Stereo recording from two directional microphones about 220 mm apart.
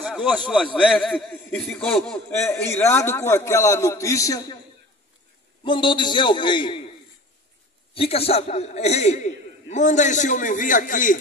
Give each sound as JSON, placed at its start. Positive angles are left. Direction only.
{"t": 0.0, "sound": "a sound", "side_deg": 0}
{"t": 0.5, "sound": "a man's voice", "side_deg": 0}
{"t": 5.7, "sound": "a man's voice", "side_deg": 20}
{"t": 7.9, "sound": "a man's voice", "side_deg": 25}